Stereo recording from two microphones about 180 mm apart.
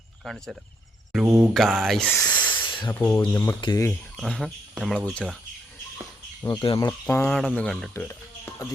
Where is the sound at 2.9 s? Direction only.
15° left (ahead or behind).